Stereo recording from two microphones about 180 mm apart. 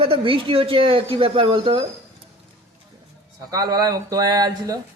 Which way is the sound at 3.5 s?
20° right (ahead or behind).